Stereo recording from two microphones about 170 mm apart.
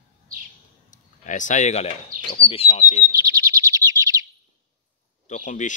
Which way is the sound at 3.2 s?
20° right (ahead or behind).